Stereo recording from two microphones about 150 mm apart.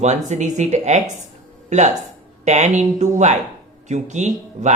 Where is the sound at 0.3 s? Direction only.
55° right (ahead or behind).